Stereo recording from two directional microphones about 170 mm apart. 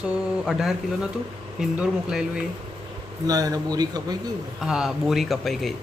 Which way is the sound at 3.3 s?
20° right (ahead or behind).